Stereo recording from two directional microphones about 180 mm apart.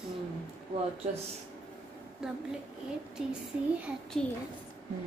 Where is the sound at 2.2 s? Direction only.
5° right (ahead or behind).